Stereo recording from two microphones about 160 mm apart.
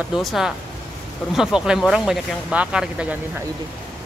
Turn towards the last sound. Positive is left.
turn(degrees=-5)  # may be behind; listen again after turning